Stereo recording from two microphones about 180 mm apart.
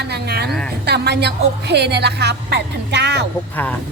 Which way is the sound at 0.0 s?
65° right (ahead or behind).